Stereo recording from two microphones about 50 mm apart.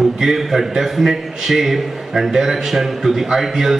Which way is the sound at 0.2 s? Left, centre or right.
Centre.